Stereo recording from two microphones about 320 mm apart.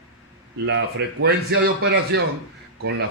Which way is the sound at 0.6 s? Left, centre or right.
Right.